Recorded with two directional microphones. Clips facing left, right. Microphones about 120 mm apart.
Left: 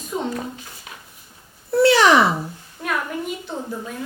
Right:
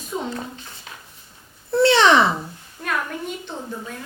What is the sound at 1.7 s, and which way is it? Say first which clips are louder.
Speech: left 1 dB; 25° right (ahead or behind).